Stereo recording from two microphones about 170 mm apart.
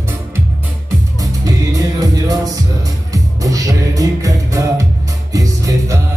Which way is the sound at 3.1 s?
20° right (ahead or behind).